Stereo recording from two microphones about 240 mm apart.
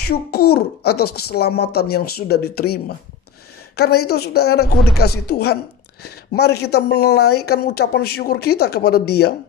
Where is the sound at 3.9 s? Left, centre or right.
Left.